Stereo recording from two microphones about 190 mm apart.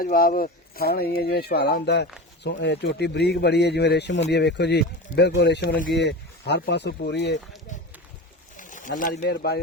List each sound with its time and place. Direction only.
0.0 s speech: 50° left (ahead or behind)
8.5 s bird: 45° left (ahead or behind)
9.2 s speech: 60° left (ahead or behind)